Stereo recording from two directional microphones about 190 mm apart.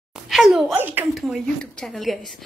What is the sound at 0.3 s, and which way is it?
A woman's voice, centre (ahead or behind).